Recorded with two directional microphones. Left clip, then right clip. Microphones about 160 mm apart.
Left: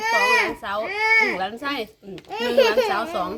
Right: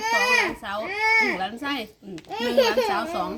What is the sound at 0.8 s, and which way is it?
Speech, centre (ahead or behind).